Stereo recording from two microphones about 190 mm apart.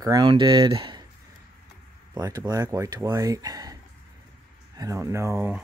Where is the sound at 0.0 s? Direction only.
20° right (ahead or behind).